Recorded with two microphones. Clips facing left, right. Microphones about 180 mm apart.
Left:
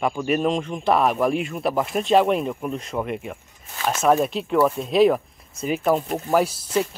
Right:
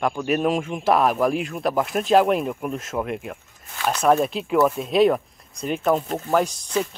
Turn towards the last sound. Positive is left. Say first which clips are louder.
# left 1 dB
turn(degrees=5)  # may be behind; listen again after turning